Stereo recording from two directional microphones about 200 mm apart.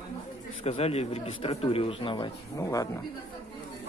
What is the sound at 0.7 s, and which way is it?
Speech, 30° left (ahead or behind).